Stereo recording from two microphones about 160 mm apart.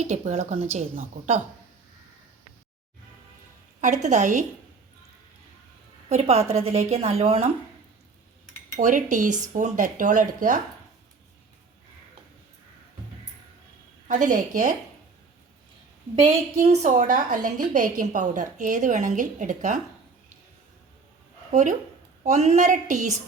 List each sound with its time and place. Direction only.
0.0 s a woman's voice: 45° right (ahead or behind)
3.8 s a woman's voice: 50° right (ahead or behind)
6.1 s a woman's voice: 40° right (ahead or behind)
8.7 s a woman's voice: 50° right (ahead or behind)
14.1 s a woman's voice: 50° right (ahead or behind)
16.8 s a woman's voice: 50° right (ahead or behind)
21.5 s a woman's voice: 50° right (ahead or behind)